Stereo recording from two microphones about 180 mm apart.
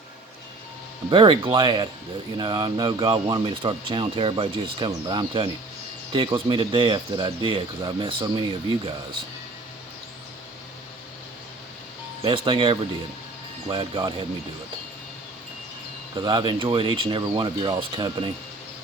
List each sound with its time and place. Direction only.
1.1 s speech: 30° right (ahead or behind)
12.2 s speech: 30° right (ahead or behind)
16.2 s speech: 25° right (ahead or behind)